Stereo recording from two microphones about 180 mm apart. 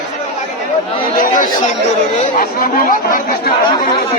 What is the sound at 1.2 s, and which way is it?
Chatter, 50° left (ahead or behind).